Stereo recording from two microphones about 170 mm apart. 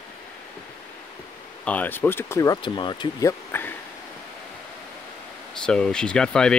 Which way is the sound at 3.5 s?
10° left (ahead or behind).